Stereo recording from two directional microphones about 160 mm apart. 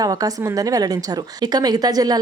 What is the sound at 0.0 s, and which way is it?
A woman's voice, 25° right (ahead or behind).